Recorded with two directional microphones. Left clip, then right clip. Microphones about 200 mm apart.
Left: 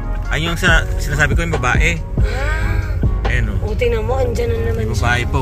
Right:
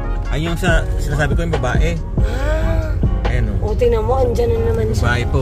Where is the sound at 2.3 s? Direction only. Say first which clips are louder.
Right 2 dB; 45° right (ahead or behind).